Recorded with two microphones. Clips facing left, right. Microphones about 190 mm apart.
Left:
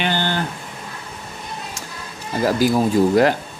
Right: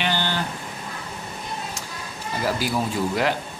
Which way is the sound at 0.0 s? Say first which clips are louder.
Left 3 dB; 50° left (ahead or behind).